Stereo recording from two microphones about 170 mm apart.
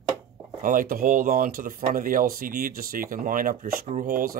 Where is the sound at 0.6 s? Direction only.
55° right (ahead or behind).